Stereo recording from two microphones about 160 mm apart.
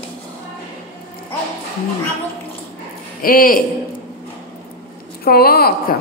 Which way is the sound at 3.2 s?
60° left (ahead or behind).